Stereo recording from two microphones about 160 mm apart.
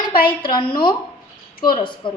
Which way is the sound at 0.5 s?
30° left (ahead or behind).